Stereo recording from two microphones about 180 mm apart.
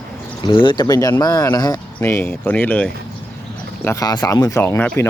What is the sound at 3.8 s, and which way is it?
Speech, 20° left (ahead or behind).